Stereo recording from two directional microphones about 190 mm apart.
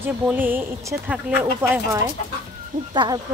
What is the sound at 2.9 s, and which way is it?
Speech, 25° right (ahead or behind).